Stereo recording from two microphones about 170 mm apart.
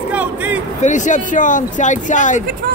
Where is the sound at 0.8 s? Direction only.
45° left (ahead or behind).